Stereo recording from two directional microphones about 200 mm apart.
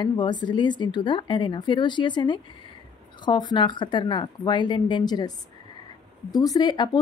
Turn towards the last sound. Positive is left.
turn(degrees=20)  # may be behind; listen again after turning